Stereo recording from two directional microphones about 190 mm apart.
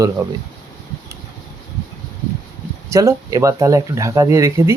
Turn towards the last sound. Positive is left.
turn(degrees=-15)  # may be behind; listen again after turning